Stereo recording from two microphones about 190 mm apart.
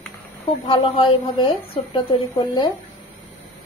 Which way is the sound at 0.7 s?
30° left (ahead or behind).